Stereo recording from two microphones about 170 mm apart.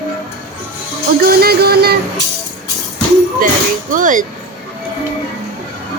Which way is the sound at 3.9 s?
50° right (ahead or behind).